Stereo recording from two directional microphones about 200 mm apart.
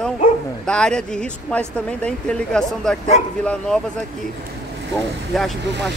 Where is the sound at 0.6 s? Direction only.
5° left (ahead or behind).